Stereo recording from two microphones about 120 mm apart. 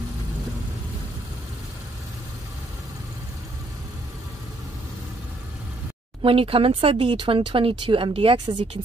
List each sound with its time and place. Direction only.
6.2 s speech: 50° right (ahead or behind)